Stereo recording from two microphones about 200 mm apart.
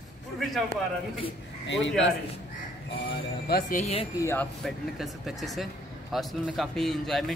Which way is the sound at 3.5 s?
45° left (ahead or behind).